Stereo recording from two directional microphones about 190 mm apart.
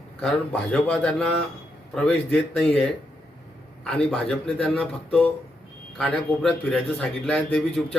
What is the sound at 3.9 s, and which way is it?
A man's voice, 5° left (ahead or behind).